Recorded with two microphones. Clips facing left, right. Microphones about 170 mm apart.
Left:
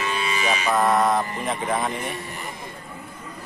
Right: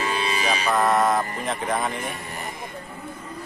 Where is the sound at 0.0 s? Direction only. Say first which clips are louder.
Even; 35° right (ahead or behind).